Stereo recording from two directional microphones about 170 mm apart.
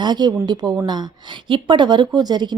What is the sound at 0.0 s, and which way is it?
Speech, 25° right (ahead or behind).